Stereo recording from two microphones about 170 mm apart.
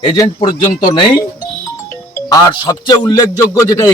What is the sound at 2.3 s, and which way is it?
A man's voice, 25° left (ahead or behind).